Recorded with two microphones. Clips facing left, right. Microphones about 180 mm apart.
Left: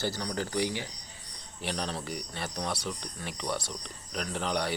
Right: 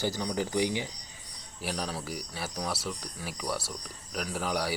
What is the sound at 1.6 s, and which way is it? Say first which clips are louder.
A man's voice: even; 5° right (ahead or behind).